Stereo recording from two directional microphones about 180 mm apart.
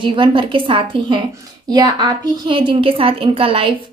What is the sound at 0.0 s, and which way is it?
A woman's voice, 30° right (ahead or behind).